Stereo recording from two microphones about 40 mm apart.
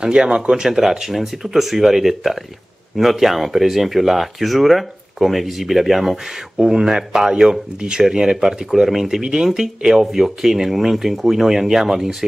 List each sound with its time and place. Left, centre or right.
0.0 s speech: centre
6.6 s speech: centre
9.2 s speech: centre